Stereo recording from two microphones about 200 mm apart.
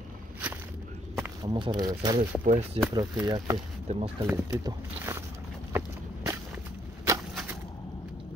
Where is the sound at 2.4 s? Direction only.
40° right (ahead or behind).